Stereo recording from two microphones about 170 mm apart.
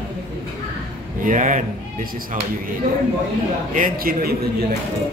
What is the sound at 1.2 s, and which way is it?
Speech, 50° right (ahead or behind).